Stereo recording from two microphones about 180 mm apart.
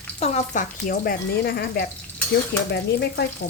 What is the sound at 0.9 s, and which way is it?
Speech, 60° left (ahead or behind).